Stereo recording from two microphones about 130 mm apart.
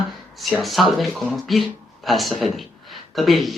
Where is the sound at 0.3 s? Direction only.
Centre (ahead or behind).